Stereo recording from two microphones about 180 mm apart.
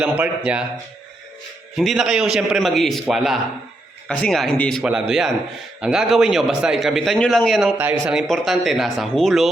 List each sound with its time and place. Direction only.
0.0 s a man's voice: 10° right (ahead or behind)
1.7 s a man's voice: centre (ahead or behind)
7.8 s a man's voice: 10° right (ahead or behind)
8.3 s a man's voice: centre (ahead or behind)